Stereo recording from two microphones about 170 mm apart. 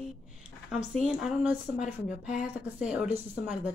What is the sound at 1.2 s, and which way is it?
Speech, 5° right (ahead or behind).